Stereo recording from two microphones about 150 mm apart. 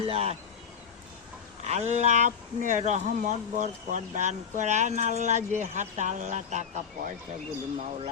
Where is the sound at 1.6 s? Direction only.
50° right (ahead or behind).